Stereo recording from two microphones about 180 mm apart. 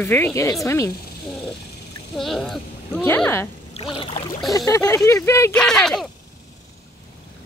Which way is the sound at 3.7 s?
30° left (ahead or behind).